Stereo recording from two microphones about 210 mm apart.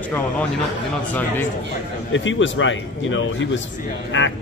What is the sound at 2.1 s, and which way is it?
Speech, 65° left (ahead or behind).